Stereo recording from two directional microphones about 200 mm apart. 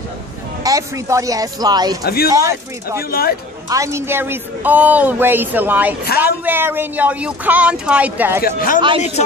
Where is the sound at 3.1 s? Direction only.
50° left (ahead or behind).